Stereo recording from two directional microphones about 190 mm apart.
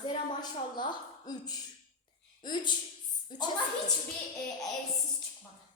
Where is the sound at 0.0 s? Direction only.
25° left (ahead or behind).